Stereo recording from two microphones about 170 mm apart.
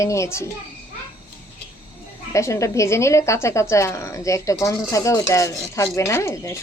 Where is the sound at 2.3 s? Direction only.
15° left (ahead or behind).